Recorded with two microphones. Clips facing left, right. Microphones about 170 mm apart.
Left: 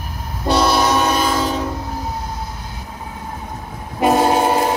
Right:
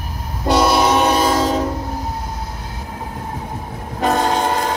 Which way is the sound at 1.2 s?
40° right (ahead or behind).